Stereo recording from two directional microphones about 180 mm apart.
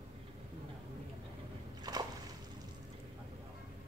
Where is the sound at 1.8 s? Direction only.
20° right (ahead or behind).